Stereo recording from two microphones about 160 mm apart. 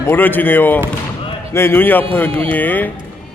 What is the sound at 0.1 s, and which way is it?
A man's voice, 10° left (ahead or behind).